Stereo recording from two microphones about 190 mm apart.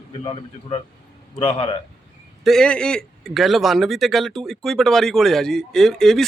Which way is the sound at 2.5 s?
5° left (ahead or behind).